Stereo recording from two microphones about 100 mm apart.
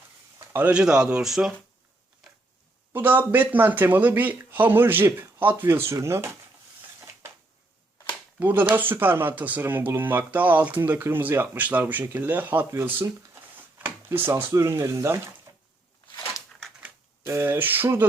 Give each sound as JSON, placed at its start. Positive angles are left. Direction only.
{"t": 0.5, "sound": "speech", "side_deg": -15}
{"t": 2.9, "sound": "speech", "side_deg": -20}
{"t": 8.4, "sound": "speech", "side_deg": -20}
{"t": 13.7, "sound": "a sound", "side_deg": -20}
{"t": 14.5, "sound": "speech", "side_deg": -30}
{"t": 15.5, "sound": "a sound", "side_deg": -40}
{"t": 17.2, "sound": "speech", "side_deg": -25}